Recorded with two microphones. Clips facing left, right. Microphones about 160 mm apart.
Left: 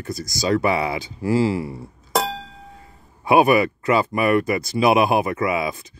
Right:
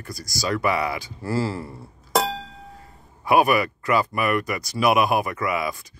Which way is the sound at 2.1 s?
Centre (ahead or behind).